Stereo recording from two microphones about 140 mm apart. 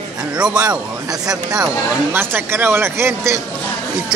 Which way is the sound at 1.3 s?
25° right (ahead or behind).